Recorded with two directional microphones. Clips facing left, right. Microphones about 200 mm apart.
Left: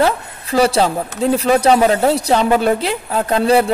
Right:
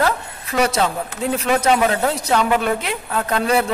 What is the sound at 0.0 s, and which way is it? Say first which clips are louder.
A woman's voice: left 4 dB; 30° left (ahead or behind).